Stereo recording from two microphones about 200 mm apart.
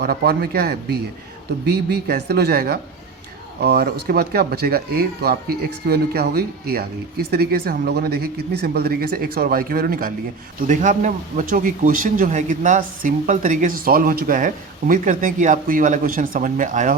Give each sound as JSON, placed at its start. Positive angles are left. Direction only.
{"t": 0.0, "sound": "speech", "side_deg": -50}